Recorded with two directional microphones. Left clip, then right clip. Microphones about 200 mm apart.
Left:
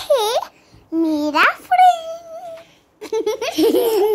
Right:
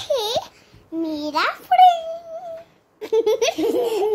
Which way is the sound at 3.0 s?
10° right (ahead or behind).